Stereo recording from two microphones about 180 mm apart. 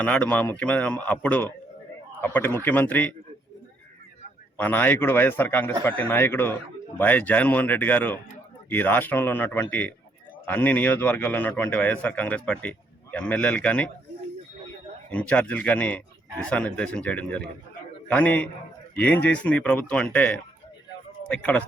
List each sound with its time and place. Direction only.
0.0 s a man's voice: 5° left (ahead or behind)
4.5 s a man's voice: 10° left (ahead or behind)
15.1 s a man's voice: 5° left (ahead or behind)